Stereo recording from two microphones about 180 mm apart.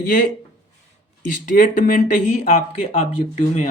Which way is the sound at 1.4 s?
45° left (ahead or behind).